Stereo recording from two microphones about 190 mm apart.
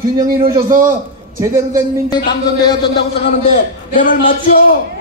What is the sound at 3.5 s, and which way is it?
A man's voice, 45° left (ahead or behind).